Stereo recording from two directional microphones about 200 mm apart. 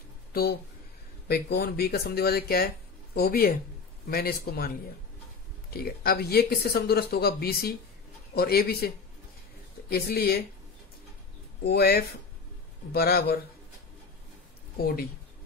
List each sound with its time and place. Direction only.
0.3 s speech: 50° left (ahead or behind)
11.6 s speech: 50° left (ahead or behind)